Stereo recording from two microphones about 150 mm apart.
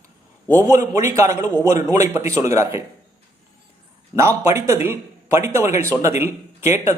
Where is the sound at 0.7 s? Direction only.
20° right (ahead or behind).